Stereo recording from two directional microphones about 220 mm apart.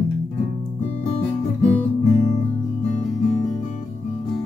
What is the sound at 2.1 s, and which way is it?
Music, 30° left (ahead or behind).